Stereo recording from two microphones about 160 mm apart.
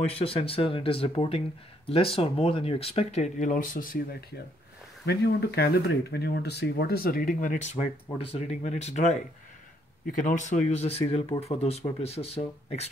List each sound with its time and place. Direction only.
0.2 s speech: 35° left (ahead or behind); by 4.2 s 60° left (ahead or behind)
5.0 s speech: 90° left; by 9.2 s 45° left (ahead or behind)
10.0 s speech: 55° left (ahead or behind); by 12.9 s 40° left (ahead or behind)